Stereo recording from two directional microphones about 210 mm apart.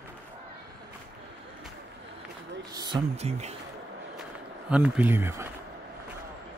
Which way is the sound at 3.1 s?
30° right (ahead or behind).